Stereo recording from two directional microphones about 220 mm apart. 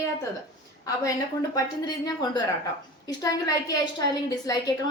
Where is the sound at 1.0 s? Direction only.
15° left (ahead or behind).